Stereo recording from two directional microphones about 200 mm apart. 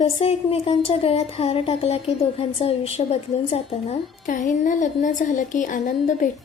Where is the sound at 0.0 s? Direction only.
30° left (ahead or behind).